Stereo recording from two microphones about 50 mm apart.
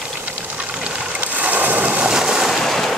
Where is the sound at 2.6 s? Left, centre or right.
Centre.